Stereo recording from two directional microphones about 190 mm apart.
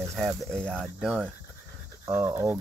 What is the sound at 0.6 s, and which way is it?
Speech, 5° left (ahead or behind).